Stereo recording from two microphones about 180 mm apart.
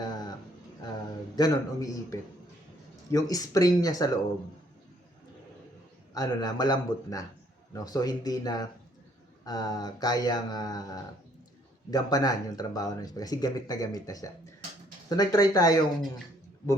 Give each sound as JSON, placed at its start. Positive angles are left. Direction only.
{"t": 0.0, "sound": "a sound", "side_deg": 20}
{"t": 1.4, "sound": "speech", "side_deg": 20}
{"t": 6.1, "sound": "speech", "side_deg": 20}